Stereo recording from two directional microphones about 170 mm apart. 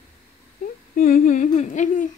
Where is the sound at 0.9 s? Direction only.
55° left (ahead or behind).